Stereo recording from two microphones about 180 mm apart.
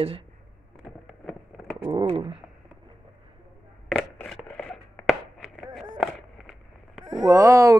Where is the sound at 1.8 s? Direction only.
30° right (ahead or behind).